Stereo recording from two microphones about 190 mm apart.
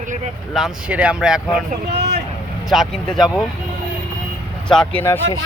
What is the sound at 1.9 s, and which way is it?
Vehicle, 60° right (ahead or behind).